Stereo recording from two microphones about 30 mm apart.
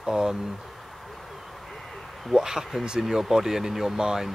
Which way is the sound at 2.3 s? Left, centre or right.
Centre.